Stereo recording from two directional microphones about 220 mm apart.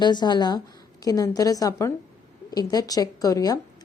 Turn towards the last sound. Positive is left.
turn(degrees=15)  # may be behind; listen again after turning